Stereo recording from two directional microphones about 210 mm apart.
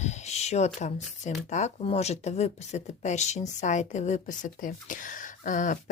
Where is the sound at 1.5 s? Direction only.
35° left (ahead or behind).